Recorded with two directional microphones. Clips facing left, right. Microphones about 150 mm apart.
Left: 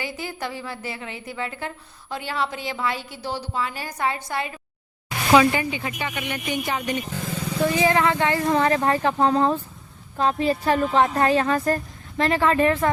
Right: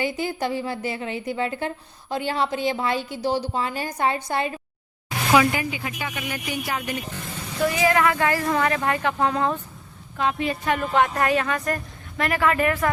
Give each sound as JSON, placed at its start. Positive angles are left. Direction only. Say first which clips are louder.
{"t": 0.0, "sound": "a woman's voice", "louder": "right 5 dB", "side_deg": -20}
{"t": 3.5, "sound": "a woman's voice", "louder": "right 2 dB", "side_deg": -25}
{"t": 5.3, "sound": "speech", "louder": "left 2 dB", "side_deg": -5}
{"t": 7.6, "sound": "a woman's voice", "louder": "even", "side_deg": 25}